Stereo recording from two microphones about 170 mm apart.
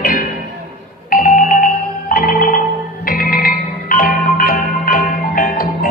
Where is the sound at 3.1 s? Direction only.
55° left (ahead or behind).